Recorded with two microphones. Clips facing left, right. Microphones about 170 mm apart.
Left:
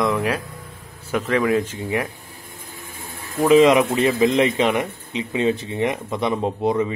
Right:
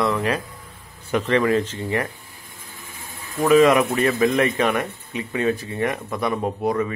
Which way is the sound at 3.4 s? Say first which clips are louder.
Left 1 dB; 20° left (ahead or behind).